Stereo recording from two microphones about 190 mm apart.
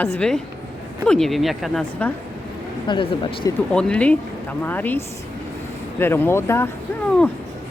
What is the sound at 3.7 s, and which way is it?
A woman's voice, 5° left (ahead or behind).